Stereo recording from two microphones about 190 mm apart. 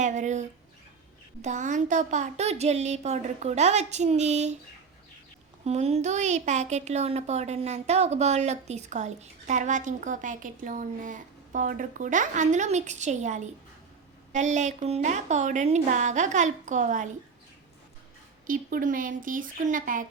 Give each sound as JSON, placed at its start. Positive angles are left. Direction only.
{"t": 0.0, "sound": "a sound", "side_deg": -40}
{"t": 1.4, "sound": "speech", "side_deg": -40}
{"t": 5.6, "sound": "speech", "side_deg": -35}
{"t": 18.4, "sound": "speech", "side_deg": -45}